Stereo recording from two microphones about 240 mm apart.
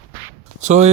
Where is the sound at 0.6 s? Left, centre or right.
Right.